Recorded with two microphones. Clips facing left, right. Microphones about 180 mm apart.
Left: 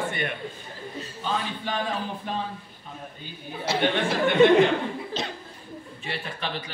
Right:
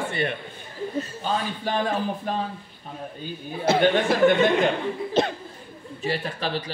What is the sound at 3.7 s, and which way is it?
Speech, 50° right (ahead or behind).